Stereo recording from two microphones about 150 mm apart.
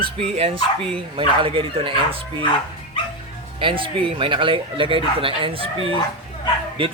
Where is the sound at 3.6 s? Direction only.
35° right (ahead or behind).